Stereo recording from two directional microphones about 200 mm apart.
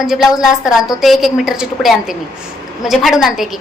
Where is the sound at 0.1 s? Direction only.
Centre (ahead or behind).